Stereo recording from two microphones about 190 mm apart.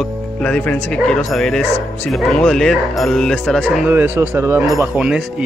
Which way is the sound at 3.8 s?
10° right (ahead or behind).